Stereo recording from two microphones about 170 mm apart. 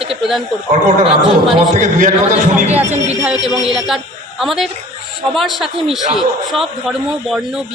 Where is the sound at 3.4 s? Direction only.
25° left (ahead or behind).